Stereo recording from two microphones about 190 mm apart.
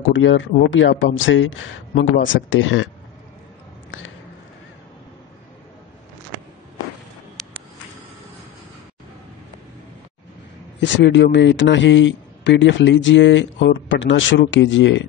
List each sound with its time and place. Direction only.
0.0 s speech: 85° left
3.9 s a sound: 90° left
10.8 s a man's voice: 70° left (ahead or behind)